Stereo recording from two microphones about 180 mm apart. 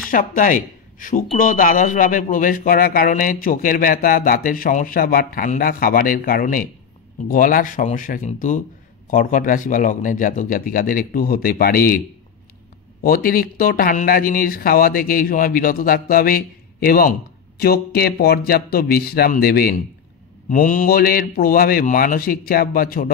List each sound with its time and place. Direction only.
0.1 s speech: 50° left (ahead or behind)
13.0 s a man's voice: 55° left (ahead or behind)
20.4 s a man's voice: 50° left (ahead or behind)